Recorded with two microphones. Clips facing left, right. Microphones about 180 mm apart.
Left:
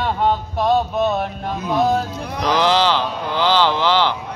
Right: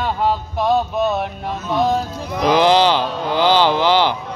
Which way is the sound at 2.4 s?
15° right (ahead or behind).